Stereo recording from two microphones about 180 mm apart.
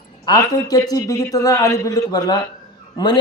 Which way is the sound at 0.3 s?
20° left (ahead or behind).